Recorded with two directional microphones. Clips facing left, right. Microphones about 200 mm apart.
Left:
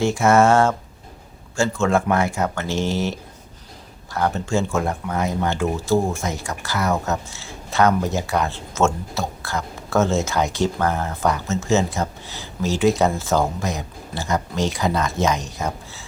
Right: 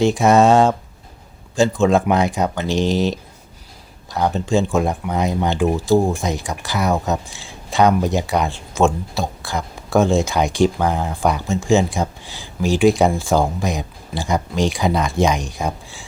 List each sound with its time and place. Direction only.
0.0 s speech: 15° right (ahead or behind)